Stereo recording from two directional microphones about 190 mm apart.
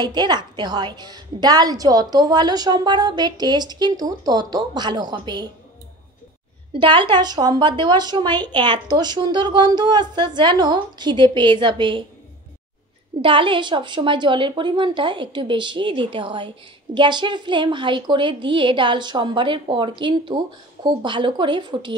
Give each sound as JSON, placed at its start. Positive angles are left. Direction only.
{"t": 0.0, "sound": "a woman's voice", "side_deg": -20}
{"t": 6.8, "sound": "a woman's voice", "side_deg": -25}
{"t": 13.2, "sound": "a woman's voice", "side_deg": -25}